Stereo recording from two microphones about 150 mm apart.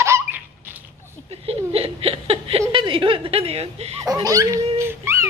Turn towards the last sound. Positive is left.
turn(degrees=-15)  # may be behind; listen again after turning